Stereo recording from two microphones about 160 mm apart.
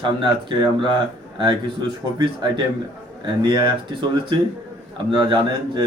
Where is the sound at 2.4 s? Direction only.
30° right (ahead or behind).